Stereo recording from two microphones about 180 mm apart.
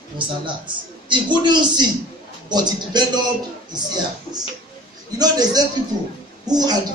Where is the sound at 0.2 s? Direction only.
25° right (ahead or behind).